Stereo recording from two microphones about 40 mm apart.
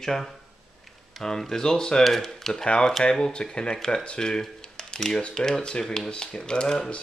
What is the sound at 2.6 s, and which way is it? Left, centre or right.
Speech, left.